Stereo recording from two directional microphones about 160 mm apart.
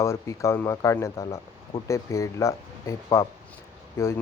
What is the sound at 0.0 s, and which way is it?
Speech, 15° left (ahead or behind).